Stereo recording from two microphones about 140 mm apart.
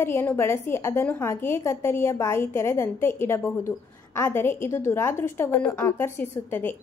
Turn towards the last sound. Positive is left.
turn(degrees=15)  # may be behind; listen again after turning